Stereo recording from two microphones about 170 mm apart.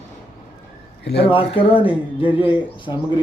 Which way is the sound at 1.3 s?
30° left (ahead or behind).